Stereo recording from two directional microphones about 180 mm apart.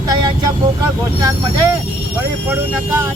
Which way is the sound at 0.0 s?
25° right (ahead or behind).